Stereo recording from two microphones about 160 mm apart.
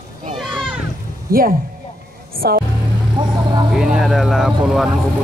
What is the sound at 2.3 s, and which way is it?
Music, 65° right (ahead or behind).